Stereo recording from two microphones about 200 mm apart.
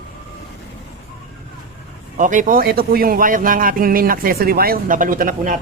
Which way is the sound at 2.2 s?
40° right (ahead or behind).